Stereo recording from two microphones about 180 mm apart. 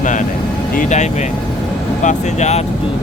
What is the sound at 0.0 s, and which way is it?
Vehicle, 45° left (ahead or behind).